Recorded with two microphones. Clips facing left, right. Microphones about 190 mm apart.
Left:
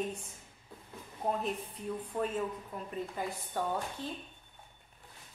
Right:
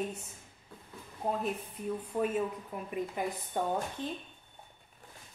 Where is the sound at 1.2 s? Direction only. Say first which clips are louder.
Right 1 dB; centre (ahead or behind).